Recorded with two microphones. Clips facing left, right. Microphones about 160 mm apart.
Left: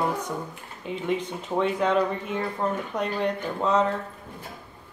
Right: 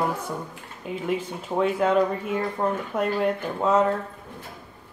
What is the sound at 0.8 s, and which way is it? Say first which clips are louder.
A woman's voice: even; 5° right (ahead or behind).